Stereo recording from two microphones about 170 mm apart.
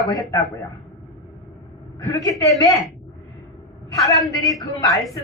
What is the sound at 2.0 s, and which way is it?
A woman's voice, 20° left (ahead or behind).